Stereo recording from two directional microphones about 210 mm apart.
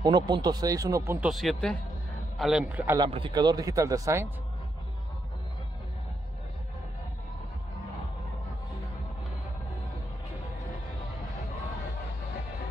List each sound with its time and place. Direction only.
0.0 s speech: 20° right (ahead or behind)
1.3 s speech: centre (ahead or behind)
3.1 s speech: 25° right (ahead or behind)